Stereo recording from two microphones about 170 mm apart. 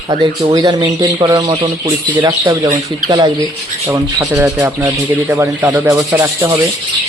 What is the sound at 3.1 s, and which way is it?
Speech, 25° right (ahead or behind).